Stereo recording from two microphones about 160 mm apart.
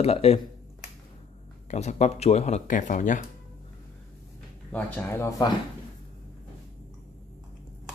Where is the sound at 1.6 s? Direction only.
45° left (ahead or behind).